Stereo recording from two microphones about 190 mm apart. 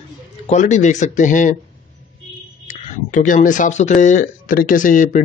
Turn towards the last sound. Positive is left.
turn(degrees=45)  # may be behind; listen again after turning